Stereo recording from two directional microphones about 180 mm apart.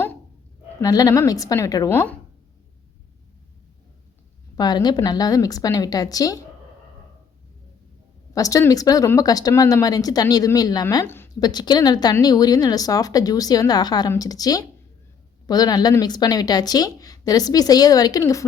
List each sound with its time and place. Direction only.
0.8 s speech: 20° left (ahead or behind)
4.5 s speech: 20° left (ahead or behind)
8.4 s speech: 20° left (ahead or behind)